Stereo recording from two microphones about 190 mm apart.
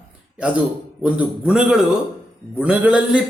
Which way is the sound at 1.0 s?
5° right (ahead or behind).